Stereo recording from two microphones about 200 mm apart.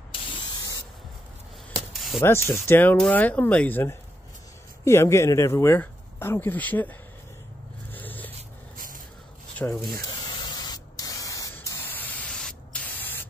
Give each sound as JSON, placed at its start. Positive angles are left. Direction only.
{"t": 2.0, "sound": "spray", "side_deg": 0}
{"t": 2.2, "sound": "speech", "side_deg": 10}
{"t": 7.9, "sound": "zipper", "side_deg": 10}
{"t": 8.4, "sound": "a sound", "side_deg": -45}
{"t": 9.6, "sound": "spray", "side_deg": 15}